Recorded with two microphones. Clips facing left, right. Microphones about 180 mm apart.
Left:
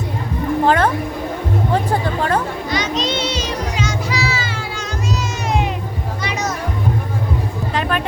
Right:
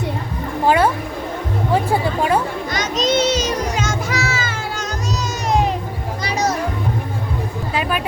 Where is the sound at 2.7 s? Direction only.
45° right (ahead or behind).